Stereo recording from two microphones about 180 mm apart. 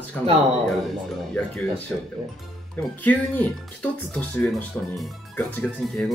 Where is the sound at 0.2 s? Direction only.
5° left (ahead or behind).